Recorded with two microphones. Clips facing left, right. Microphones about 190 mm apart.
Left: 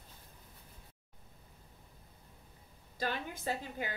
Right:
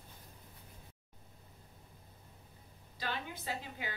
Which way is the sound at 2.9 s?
45° left (ahead or behind).